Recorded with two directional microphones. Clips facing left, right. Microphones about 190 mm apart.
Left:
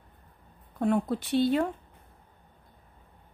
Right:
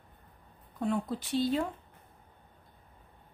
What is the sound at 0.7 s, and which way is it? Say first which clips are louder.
Speech: left 5 dB; 60° left (ahead or behind).